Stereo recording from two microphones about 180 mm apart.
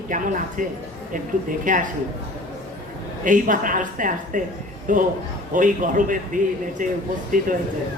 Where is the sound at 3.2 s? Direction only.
45° right (ahead or behind).